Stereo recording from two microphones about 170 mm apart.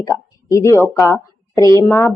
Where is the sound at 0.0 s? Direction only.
20° left (ahead or behind).